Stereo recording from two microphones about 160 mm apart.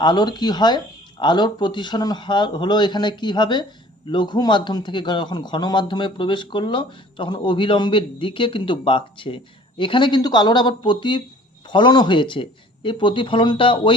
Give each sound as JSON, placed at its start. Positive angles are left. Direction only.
{"t": 0.0, "sound": "speech", "side_deg": 30}